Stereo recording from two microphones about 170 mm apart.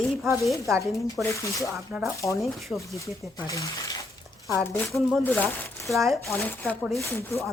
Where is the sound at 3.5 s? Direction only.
20° left (ahead or behind).